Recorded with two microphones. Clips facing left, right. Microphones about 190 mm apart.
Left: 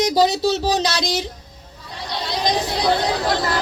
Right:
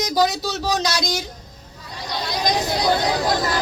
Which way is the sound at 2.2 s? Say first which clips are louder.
Left 1 dB; 25° left (ahead or behind).